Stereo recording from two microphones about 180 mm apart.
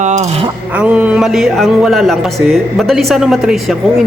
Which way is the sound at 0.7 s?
5° right (ahead or behind).